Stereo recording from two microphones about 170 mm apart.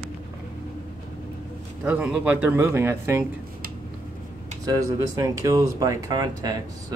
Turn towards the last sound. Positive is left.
turn(degrees=-20)  # may be behind; listen again after turning